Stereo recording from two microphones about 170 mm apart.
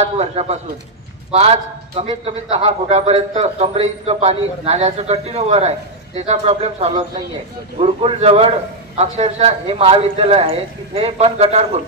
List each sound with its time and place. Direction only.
0.0 s a man's voice: 40° right (ahead or behind)